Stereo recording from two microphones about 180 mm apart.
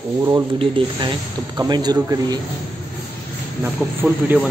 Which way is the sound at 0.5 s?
30° right (ahead or behind).